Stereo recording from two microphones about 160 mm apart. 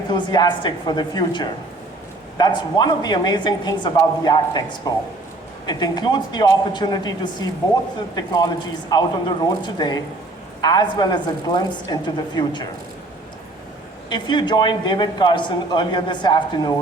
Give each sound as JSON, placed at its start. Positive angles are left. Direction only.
{"t": 0.1, "sound": "a man's voice", "side_deg": 25}
{"t": 14.1, "sound": "a man's voice", "side_deg": 30}